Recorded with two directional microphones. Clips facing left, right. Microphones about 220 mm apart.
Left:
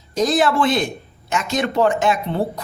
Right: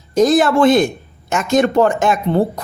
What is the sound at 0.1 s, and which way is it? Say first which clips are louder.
Speech: right 5 dB; 50° right (ahead or behind).